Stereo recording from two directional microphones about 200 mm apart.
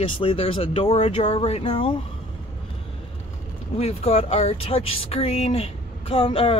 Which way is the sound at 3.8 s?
30° left (ahead or behind).